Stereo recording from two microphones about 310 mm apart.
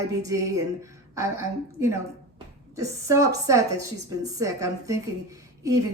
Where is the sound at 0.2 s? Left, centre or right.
Centre.